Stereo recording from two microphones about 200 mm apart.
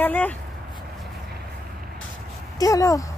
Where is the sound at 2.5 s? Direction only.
15° left (ahead or behind).